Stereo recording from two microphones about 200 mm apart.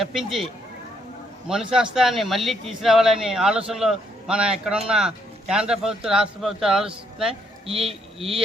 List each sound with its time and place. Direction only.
0.0 s speech: centre (ahead or behind)
1.5 s speech: 5° right (ahead or behind)
7.7 s speech: 30° right (ahead or behind)